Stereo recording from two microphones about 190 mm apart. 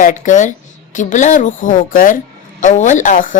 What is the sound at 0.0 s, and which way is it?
Speech, 40° left (ahead or behind).